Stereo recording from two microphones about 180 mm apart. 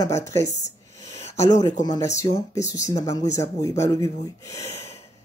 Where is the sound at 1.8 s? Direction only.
20° left (ahead or behind).